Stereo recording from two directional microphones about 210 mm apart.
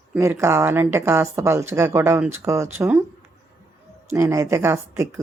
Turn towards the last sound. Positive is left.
turn(degrees=-10)  # may be behind; listen again after turning